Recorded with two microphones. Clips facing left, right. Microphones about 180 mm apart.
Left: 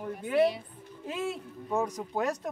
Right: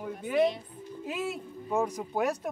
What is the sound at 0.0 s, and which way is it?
Speech, centre (ahead or behind).